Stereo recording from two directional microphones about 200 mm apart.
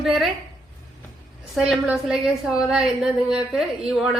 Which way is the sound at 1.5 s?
Centre (ahead or behind).